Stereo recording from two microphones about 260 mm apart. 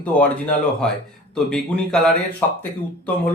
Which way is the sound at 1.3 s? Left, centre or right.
Centre.